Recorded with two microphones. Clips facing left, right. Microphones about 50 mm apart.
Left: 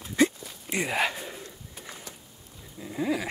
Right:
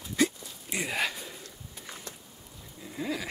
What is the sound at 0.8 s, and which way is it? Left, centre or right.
Speech, left.